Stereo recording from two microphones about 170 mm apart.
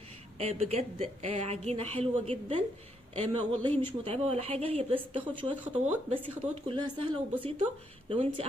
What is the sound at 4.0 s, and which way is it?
Speech, 35° right (ahead or behind).